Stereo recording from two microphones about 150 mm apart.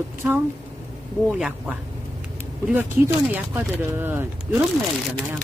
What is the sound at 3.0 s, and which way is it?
Speech, 10° right (ahead or behind).